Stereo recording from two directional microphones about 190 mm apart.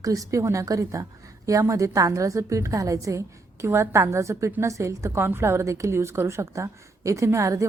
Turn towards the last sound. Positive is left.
turn(degrees=-15)  # may be behind; listen again after turning